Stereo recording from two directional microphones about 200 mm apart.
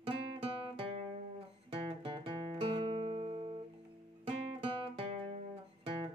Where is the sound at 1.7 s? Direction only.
25° right (ahead or behind).